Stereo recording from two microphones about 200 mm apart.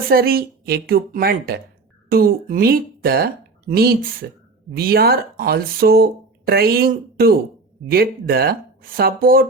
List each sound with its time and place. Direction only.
0.1 s speech: 50° right (ahead or behind)